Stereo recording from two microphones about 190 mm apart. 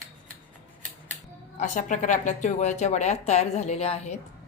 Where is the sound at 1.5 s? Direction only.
40° left (ahead or behind).